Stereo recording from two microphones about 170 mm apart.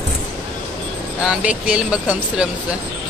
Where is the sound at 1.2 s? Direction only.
5° right (ahead or behind).